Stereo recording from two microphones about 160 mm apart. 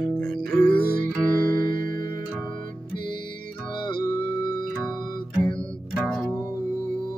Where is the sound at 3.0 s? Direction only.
30° left (ahead or behind).